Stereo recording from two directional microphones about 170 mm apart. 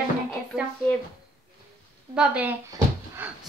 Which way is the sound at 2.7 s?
15° right (ahead or behind).